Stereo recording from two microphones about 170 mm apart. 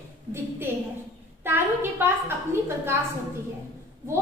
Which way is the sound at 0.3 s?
15° right (ahead or behind).